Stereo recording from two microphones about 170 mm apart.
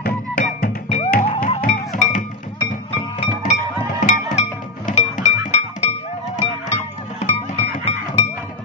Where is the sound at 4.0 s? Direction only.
50° left (ahead or behind).